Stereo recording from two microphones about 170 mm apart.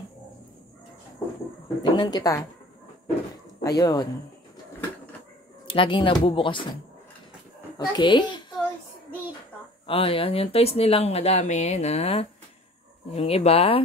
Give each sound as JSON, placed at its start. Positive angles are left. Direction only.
{"t": 1.8, "sound": "speech", "side_deg": 25}
{"t": 3.6, "sound": "speech", "side_deg": 20}
{"t": 5.8, "sound": "speech", "side_deg": 30}
{"t": 7.7, "sound": "a child's voice", "side_deg": 25}
{"t": 9.8, "sound": "speech", "side_deg": 35}